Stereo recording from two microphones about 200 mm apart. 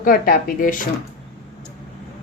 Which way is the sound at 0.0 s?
45° left (ahead or behind).